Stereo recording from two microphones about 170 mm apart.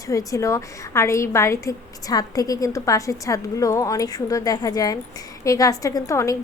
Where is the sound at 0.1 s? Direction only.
20° left (ahead or behind).